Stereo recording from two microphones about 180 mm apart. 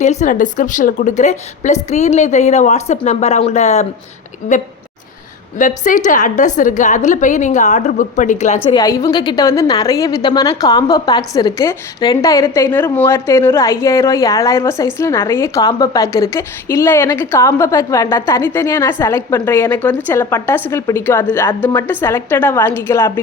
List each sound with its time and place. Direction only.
0.0 s a woman's voice: 40° left (ahead or behind)
5.5 s a woman's voice: 45° left (ahead or behind)
8.6 s a woman's voice: 20° left (ahead or behind)